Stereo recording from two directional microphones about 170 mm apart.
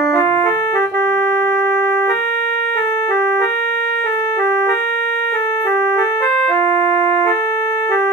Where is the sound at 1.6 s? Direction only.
15° left (ahead or behind).